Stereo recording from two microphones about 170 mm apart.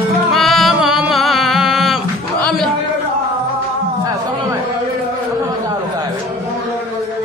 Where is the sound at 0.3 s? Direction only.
Centre (ahead or behind).